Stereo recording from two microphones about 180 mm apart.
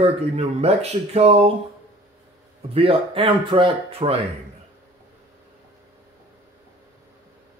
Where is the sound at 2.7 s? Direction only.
30° right (ahead or behind).